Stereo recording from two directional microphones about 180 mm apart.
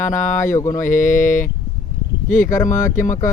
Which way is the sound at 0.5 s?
15° left (ahead or behind).